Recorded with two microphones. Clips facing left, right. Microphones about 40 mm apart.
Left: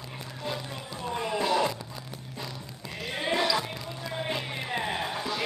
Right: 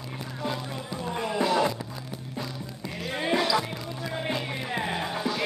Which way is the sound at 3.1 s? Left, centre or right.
Centre.